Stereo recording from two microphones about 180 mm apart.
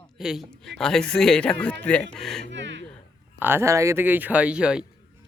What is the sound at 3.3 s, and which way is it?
Speech, 10° right (ahead or behind).